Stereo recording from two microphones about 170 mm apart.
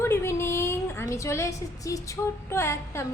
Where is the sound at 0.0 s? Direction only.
15° left (ahead or behind).